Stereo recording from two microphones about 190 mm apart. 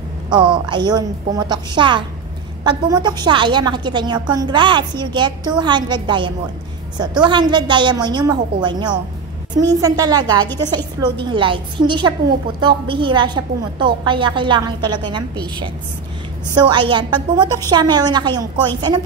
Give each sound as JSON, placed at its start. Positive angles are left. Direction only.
{"t": 0.3, "sound": "a woman's voice", "side_deg": -25}